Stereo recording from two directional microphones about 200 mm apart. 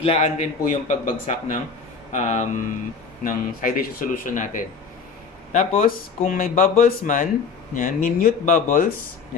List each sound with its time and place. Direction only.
0.0 s speech: 30° left (ahead or behind)